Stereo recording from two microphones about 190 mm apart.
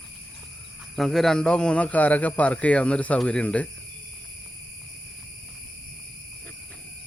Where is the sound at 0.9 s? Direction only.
Centre (ahead or behind).